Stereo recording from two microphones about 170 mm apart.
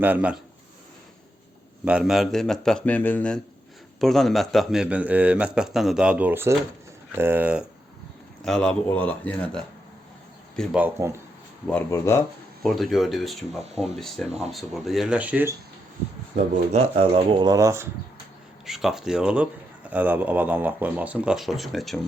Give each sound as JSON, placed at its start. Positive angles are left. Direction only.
{"t": 0.0, "sound": "speech", "side_deg": -10}
{"t": 1.8, "sound": "a man's voice", "side_deg": -5}
{"t": 8.4, "sound": "speech", "side_deg": 5}
{"t": 10.6, "sound": "speech", "side_deg": -5}
{"t": 11.7, "sound": "speech", "side_deg": 15}
{"t": 12.6, "sound": "a man's voice", "side_deg": 0}
{"t": 16.3, "sound": "speech", "side_deg": -35}
{"t": 18.6, "sound": "a man's voice", "side_deg": 0}